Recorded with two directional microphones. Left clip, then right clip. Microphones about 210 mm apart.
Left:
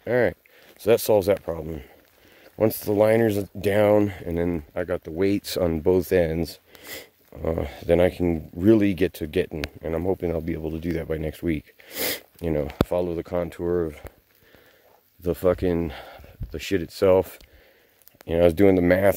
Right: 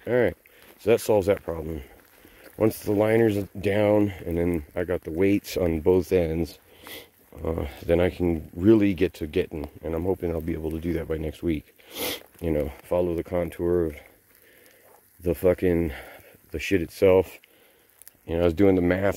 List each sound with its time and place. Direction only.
0.0 s speech: 25° left (ahead or behind)
1.2 s speech: 20° left (ahead or behind)
6.4 s speech: 80° left
7.3 s speech: 30° left (ahead or behind); by 14.0 s 10° left (ahead or behind)
15.2 s speech: 15° left (ahead or behind)
17.0 s speech: 20° left (ahead or behind)
18.2 s speech: 40° left (ahead or behind)